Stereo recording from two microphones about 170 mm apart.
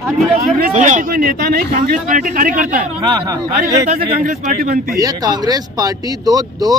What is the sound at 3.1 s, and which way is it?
Speech, 20° right (ahead or behind).